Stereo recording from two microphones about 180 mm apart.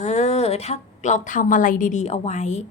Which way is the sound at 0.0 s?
40° left (ahead or behind).